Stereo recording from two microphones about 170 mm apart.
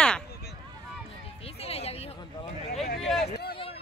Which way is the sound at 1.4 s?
35° left (ahead or behind).